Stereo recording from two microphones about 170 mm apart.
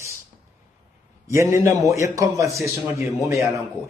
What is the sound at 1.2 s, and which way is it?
A man's voice, 15° right (ahead or behind).